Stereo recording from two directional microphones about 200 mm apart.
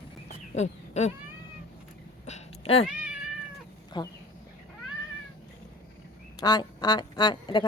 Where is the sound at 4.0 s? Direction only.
20° left (ahead or behind).